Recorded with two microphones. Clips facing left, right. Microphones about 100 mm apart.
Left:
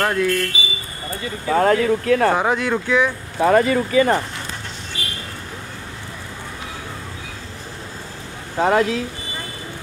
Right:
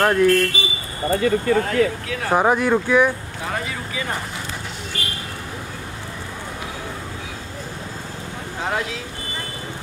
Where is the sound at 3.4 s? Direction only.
55° left (ahead or behind).